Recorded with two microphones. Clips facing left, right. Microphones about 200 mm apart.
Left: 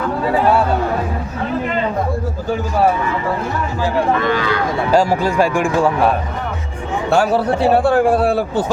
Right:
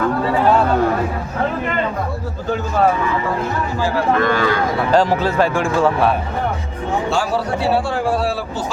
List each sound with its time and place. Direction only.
4.2 s speech: 50° right (ahead or behind)
4.9 s speech: 10° left (ahead or behind)
7.1 s a man's voice: 60° left (ahead or behind)